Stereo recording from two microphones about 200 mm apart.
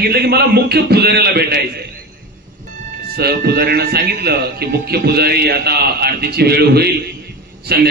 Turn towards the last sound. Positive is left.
turn(degrees=-50)  # may be behind; listen again after turning